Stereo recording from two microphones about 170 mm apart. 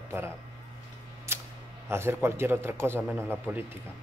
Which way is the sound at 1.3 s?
15° right (ahead or behind).